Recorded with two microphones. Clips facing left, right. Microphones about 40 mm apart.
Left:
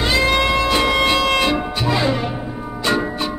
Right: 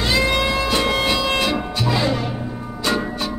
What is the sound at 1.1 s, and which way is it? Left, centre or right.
Music, left.